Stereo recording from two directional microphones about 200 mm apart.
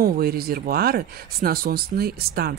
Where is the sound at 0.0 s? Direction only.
50° right (ahead or behind).